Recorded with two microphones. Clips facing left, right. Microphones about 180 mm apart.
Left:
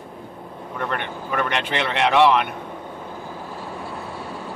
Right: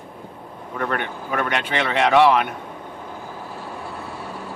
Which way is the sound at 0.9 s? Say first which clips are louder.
Even; centre (ahead or behind).